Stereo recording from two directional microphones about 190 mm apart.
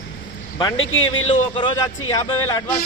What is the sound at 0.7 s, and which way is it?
Speech, 90° left.